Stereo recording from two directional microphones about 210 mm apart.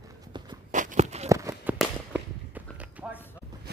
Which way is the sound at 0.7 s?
35° right (ahead or behind).